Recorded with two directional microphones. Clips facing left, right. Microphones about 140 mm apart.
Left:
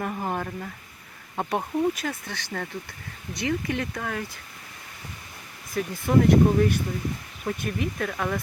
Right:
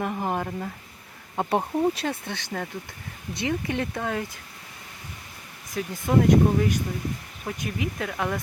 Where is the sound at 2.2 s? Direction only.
20° right (ahead or behind).